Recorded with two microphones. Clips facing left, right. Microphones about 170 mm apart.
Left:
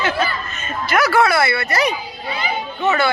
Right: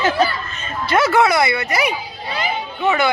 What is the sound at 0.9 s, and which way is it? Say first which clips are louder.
Speech: right 1 dB; 25° right (ahead or behind).